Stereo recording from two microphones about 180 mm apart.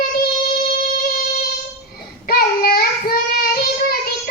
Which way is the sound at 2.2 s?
55° left (ahead or behind).